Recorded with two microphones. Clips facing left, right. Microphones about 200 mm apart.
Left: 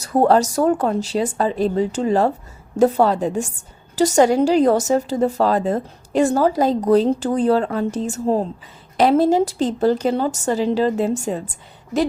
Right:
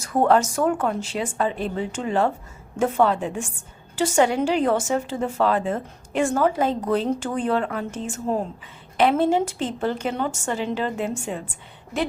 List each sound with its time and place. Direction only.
0.0 s a woman's voice: 35° left (ahead or behind)